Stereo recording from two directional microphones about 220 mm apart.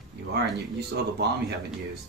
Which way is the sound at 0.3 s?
50° right (ahead or behind).